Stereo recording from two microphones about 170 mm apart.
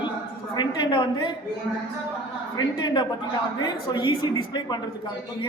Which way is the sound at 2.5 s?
25° left (ahead or behind).